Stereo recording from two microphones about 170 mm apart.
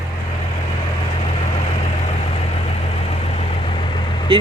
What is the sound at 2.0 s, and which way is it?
Vehicle, 35° left (ahead or behind).